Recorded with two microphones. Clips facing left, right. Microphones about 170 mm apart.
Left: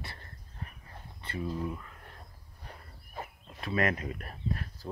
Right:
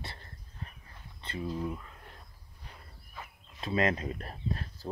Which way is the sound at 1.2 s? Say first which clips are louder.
Even; 20° right (ahead or behind).